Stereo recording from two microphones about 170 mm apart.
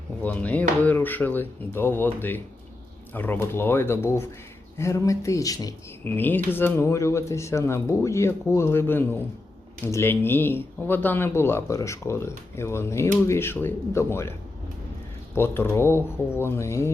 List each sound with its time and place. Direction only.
0.2 s speech: 10° left (ahead or behind)
15.4 s speech: 15° left (ahead or behind)